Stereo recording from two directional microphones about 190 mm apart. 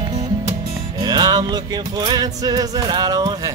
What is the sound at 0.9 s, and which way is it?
Music, 20° right (ahead or behind).